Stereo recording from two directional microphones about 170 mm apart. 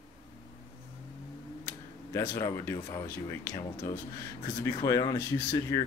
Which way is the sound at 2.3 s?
15° left (ahead or behind).